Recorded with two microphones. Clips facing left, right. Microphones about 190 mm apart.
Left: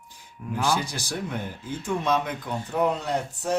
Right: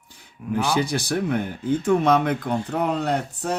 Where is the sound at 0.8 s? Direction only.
60° right (ahead or behind).